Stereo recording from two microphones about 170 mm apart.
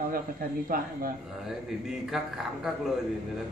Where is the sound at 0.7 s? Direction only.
60° right (ahead or behind).